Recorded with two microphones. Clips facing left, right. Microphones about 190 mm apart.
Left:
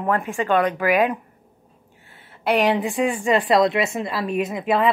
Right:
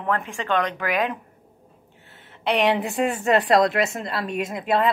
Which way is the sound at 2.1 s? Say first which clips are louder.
Left 3 dB; 10° left (ahead or behind).